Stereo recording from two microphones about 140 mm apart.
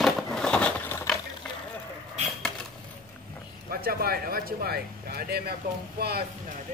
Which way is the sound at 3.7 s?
90° right.